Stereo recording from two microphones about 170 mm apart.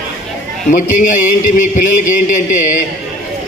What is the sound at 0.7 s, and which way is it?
Speech, 50° left (ahead or behind).